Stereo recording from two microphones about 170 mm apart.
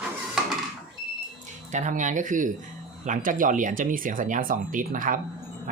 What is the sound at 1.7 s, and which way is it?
Speech, 45° right (ahead or behind).